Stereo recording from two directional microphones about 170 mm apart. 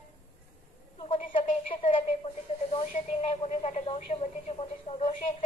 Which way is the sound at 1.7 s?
35° left (ahead or behind).